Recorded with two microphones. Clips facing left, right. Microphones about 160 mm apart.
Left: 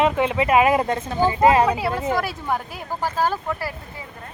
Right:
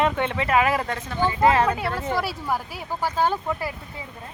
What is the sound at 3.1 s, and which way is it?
Speech, 20° right (ahead or behind).